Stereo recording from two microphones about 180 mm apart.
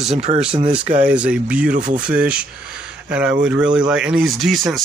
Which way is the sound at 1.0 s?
5° right (ahead or behind).